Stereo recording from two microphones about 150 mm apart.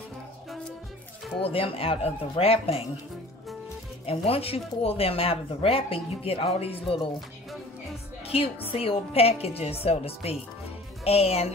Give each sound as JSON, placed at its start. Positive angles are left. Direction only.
{"t": 1.5, "sound": "speech", "side_deg": 40}
{"t": 4.0, "sound": "speech", "side_deg": 40}
{"t": 8.2, "sound": "speech", "side_deg": 40}